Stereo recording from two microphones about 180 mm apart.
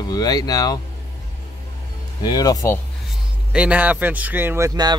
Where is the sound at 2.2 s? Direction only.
20° left (ahead or behind).